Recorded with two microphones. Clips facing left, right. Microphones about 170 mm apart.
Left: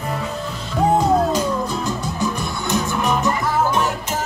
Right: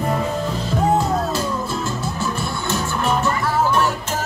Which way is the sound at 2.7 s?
15° left (ahead or behind).